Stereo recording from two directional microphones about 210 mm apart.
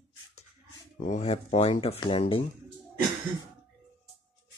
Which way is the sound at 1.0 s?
30° left (ahead or behind).